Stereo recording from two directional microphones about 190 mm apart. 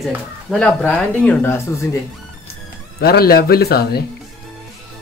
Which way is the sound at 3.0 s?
55° left (ahead or behind).